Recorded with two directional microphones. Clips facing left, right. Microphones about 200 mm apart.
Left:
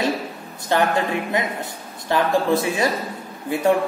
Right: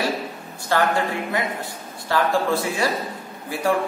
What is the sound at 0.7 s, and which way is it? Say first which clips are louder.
Speech: left 1 dB; 20° left (ahead or behind).